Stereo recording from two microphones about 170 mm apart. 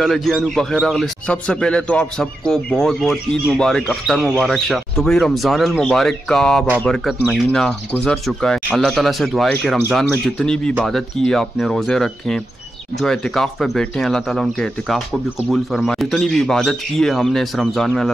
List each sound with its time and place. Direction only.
0.0 s speech: centre (ahead or behind)